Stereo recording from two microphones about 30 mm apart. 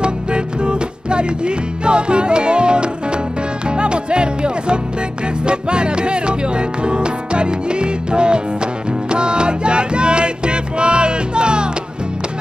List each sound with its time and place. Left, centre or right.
0.0 s music: right